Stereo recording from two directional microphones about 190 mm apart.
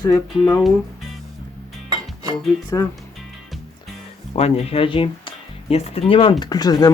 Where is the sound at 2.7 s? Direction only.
15° left (ahead or behind).